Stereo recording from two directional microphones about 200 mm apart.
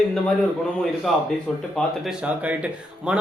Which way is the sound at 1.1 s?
Centre (ahead or behind).